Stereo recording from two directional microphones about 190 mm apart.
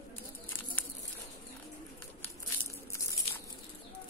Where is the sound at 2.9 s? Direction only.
15° left (ahead or behind).